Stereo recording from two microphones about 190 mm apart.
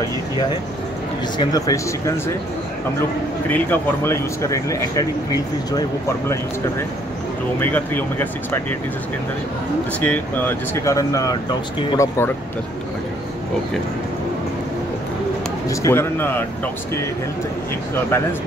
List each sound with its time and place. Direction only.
1.4 s speech: 20° left (ahead or behind)
3.4 s speech: 10° left (ahead or behind)
7.6 s speech: 10° left (ahead or behind)
9.9 s speech: 10° left (ahead or behind)
15.7 s speech: 15° left (ahead or behind)